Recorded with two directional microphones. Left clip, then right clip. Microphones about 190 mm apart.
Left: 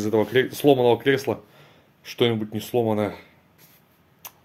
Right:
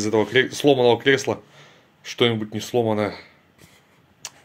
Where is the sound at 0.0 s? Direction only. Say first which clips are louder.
Right 2 dB; 10° left (ahead or behind).